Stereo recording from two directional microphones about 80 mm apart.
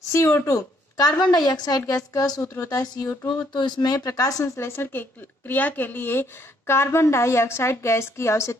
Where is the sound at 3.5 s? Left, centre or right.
Left.